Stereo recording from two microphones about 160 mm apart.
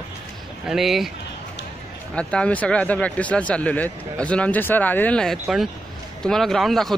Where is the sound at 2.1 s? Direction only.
5° left (ahead or behind).